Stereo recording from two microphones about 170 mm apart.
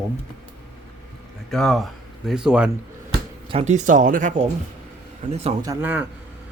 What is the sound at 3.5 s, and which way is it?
Speech, 40° right (ahead or behind).